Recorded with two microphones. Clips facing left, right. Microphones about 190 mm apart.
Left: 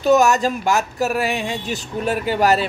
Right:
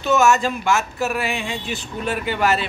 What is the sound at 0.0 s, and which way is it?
Speech, 40° left (ahead or behind).